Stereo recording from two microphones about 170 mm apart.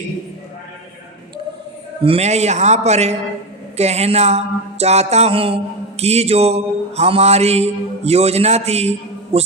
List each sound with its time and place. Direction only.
2.0 s mantra: 35° right (ahead or behind)